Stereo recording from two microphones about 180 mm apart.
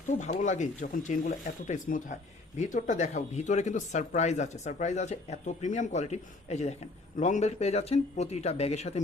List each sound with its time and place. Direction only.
0.1 s speech: 40° left (ahead or behind)